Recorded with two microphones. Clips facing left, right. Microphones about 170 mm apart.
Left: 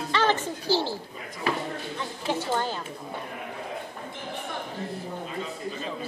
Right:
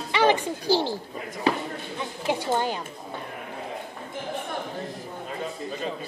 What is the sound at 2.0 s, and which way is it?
Speech, 15° right (ahead or behind).